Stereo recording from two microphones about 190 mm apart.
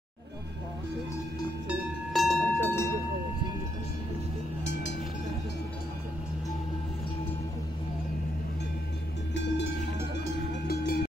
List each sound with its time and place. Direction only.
1.7 s a sound: centre (ahead or behind)
9.3 s cowbell: 70° left (ahead or behind)
10.7 s music: 55° left (ahead or behind)